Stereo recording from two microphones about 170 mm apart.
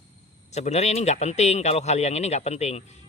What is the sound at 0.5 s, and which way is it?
A man's voice, 40° left (ahead or behind).